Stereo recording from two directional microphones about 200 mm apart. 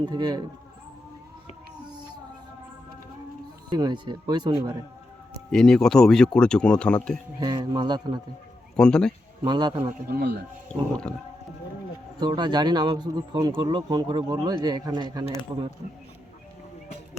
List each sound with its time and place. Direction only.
0.0 s speech: 20° right (ahead or behind)
3.7 s speech: 20° right (ahead or behind)
5.5 s speech: centre (ahead or behind)
7.3 s speech: 20° right (ahead or behind)
8.7 s speech: 5° left (ahead or behind)
9.4 s speech: 20° right (ahead or behind)
10.1 s speech: 55° right (ahead or behind)
10.7 s speech: 5° left (ahead or behind)
12.2 s speech: 20° right (ahead or behind)